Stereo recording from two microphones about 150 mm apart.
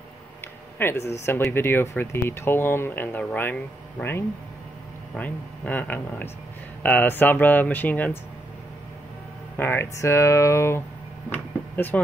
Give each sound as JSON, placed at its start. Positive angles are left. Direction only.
{"t": 0.7, "sound": "speech", "side_deg": 15}
{"t": 9.6, "sound": "speech", "side_deg": 15}